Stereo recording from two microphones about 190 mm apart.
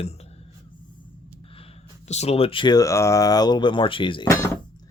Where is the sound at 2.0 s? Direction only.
35° left (ahead or behind); by 4.6 s 15° left (ahead or behind).